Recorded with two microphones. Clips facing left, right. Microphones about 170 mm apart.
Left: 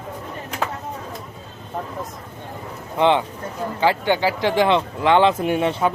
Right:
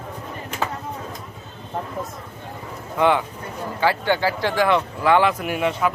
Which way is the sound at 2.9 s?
25° left (ahead or behind).